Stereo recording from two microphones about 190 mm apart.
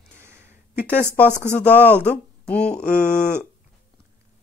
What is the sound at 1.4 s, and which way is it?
Speech, 5° left (ahead or behind).